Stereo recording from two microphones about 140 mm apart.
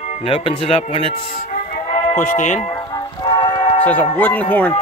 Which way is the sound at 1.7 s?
65° left (ahead or behind).